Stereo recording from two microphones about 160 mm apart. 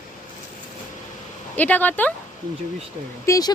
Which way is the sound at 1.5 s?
10° left (ahead or behind).